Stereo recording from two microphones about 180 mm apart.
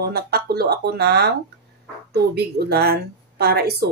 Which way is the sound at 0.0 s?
60° right (ahead or behind).